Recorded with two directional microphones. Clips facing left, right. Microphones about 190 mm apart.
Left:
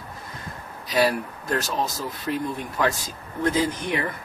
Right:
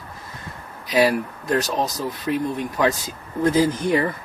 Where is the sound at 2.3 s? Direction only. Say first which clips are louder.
Right 4 dB; 15° right (ahead or behind).